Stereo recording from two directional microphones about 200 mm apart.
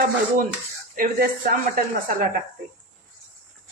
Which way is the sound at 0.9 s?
45° right (ahead or behind).